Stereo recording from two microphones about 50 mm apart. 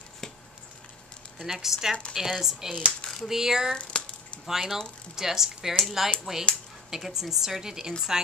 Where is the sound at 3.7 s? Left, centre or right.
Left.